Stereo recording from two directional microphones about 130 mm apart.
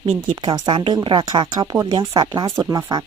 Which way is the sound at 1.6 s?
25° right (ahead or behind).